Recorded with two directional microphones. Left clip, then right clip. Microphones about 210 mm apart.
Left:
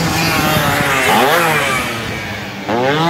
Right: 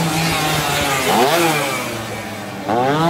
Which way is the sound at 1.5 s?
60° right (ahead or behind).